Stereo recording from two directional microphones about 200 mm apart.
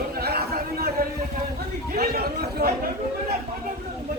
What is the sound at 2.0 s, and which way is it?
Chatter, 50° right (ahead or behind).